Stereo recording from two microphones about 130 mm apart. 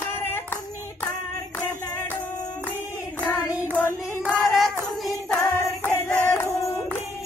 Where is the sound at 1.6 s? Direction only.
15° left (ahead or behind).